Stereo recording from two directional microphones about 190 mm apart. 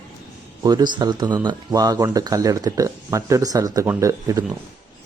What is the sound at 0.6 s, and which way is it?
A man's voice, 20° right (ahead or behind).